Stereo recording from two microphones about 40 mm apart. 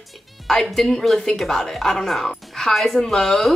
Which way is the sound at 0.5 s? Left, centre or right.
Centre.